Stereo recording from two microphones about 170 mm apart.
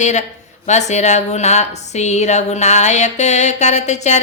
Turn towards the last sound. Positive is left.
turn(degrees=40)  # may be behind; listen again after turning